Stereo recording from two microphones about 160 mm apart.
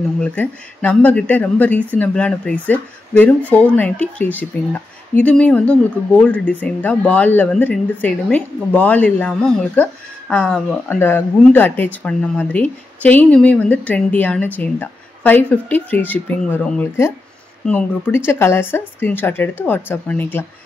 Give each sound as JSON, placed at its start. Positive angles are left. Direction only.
{"t": 0.2, "sound": "speech", "side_deg": 10}